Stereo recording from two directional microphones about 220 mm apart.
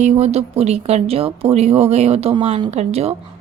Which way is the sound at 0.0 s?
30° right (ahead or behind).